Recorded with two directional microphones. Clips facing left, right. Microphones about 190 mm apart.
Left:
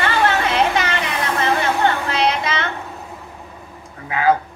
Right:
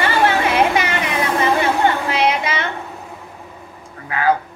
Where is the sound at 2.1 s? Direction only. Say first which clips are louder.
Right 1 dB; 10° right (ahead or behind).